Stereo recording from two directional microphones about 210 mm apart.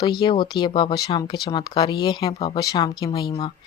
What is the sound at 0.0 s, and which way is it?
Speech, 20° left (ahead or behind).